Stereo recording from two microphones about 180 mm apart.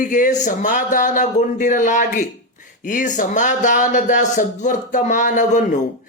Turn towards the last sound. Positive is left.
turn(degrees=45)  # may be behind; listen again after turning